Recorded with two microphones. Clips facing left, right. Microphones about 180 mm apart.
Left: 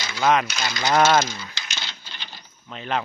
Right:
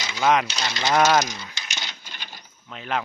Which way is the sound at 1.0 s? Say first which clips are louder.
Left 1 dB; 15° right (ahead or behind).